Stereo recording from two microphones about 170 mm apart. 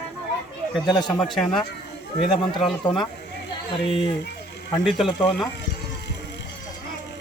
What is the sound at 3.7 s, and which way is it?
Speech, 30° left (ahead or behind).